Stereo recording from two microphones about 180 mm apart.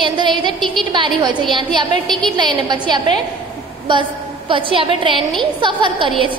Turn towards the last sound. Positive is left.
turn(degrees=-25)  # may be behind; listen again after turning